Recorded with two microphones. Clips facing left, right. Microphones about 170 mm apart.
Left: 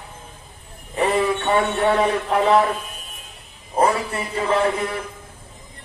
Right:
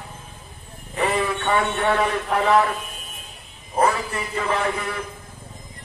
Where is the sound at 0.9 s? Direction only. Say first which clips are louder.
Left 3 dB; 25° left (ahead or behind).